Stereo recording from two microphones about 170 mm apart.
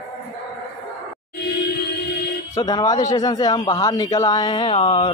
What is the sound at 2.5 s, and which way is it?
Speech, 20° left (ahead or behind).